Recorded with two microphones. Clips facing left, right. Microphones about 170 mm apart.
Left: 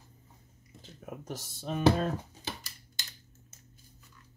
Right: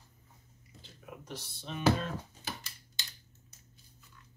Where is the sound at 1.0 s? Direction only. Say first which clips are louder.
Left 4 dB; 45° left (ahead or behind).